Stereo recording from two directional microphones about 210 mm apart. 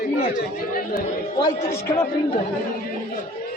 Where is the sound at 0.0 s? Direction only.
40° left (ahead or behind).